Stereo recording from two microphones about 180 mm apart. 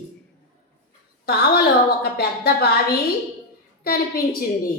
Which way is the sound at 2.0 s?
60° left (ahead or behind).